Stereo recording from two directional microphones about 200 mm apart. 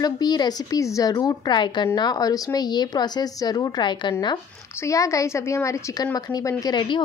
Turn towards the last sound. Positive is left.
turn(degrees=20)  # may be behind; listen again after turning